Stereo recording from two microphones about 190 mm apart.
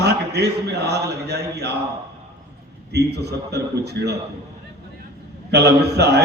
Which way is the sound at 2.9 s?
60° right (ahead or behind).